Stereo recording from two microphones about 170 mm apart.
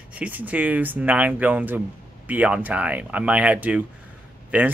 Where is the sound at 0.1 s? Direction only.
10° right (ahead or behind).